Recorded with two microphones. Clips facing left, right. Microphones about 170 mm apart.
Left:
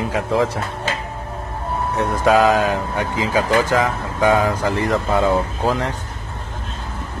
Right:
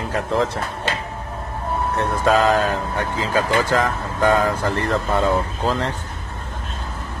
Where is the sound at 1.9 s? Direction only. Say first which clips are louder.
Left 3 dB; 10° left (ahead or behind).